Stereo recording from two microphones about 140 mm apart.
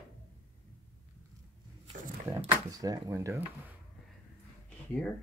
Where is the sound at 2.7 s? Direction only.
25° right (ahead or behind).